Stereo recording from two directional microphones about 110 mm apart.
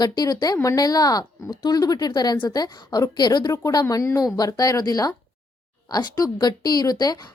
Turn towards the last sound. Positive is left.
turn(degrees=35)  # may be behind; listen again after turning